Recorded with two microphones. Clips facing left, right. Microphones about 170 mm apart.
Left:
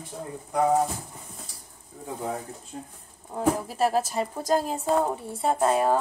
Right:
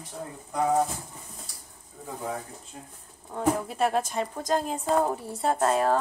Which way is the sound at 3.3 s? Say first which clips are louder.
Left 1 dB; 5° left (ahead or behind).